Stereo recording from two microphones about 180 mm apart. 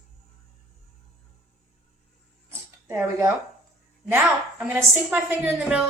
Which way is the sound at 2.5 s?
15° right (ahead or behind).